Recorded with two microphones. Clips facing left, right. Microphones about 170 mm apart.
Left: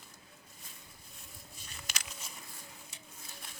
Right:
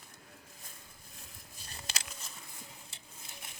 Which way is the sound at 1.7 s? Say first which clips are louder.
Right 2 dB; 30° right (ahead or behind).